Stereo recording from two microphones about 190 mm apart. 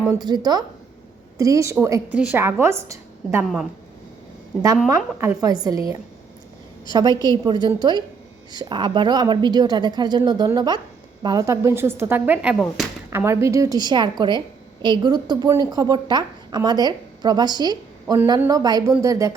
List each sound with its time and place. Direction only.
0.1 s a woman's voice: 20° right (ahead or behind)
5.2 s a woman's voice: 15° right (ahead or behind)